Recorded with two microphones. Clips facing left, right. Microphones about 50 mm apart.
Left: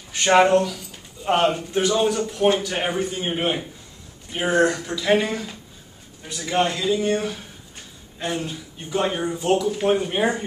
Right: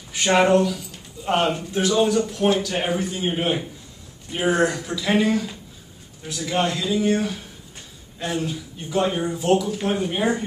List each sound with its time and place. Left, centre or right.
0.2 s speech: centre